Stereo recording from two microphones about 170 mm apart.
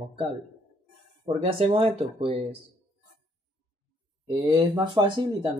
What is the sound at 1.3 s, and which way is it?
Speech, 35° right (ahead or behind).